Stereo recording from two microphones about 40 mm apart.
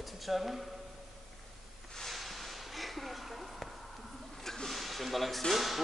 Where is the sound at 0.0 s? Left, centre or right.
Centre.